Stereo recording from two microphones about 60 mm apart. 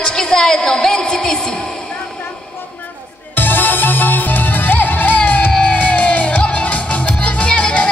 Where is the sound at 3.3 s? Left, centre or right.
Left.